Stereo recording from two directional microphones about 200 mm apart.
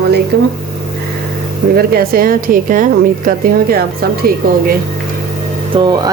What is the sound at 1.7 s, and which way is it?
A woman's voice, 50° right (ahead or behind).